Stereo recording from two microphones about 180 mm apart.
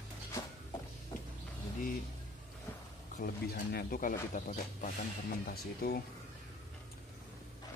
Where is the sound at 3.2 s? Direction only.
55° left (ahead or behind).